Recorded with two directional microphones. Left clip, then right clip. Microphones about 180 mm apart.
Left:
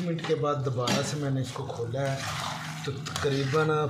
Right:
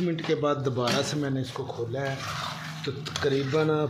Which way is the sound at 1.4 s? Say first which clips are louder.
Right 1 dB; 25° right (ahead or behind).